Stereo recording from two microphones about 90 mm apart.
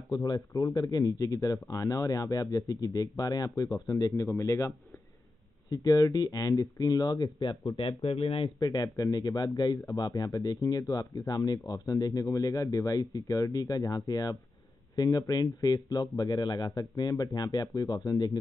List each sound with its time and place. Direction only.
0.1 s speech: 45° left (ahead or behind)
7.7 s speech: 90° left
8.5 s speech: 45° left (ahead or behind)